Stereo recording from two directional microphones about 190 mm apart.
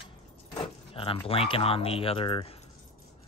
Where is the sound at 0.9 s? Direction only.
30° left (ahead or behind).